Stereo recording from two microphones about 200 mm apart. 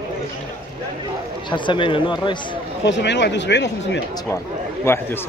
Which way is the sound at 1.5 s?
25° left (ahead or behind).